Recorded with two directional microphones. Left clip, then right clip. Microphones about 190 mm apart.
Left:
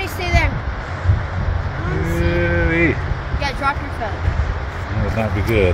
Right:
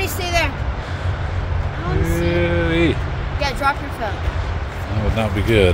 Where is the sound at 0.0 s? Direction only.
65° right (ahead or behind).